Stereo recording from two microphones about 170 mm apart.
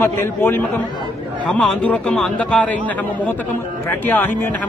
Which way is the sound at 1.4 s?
5° left (ahead or behind).